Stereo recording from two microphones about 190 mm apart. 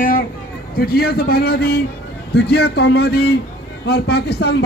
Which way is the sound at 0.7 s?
55° left (ahead or behind).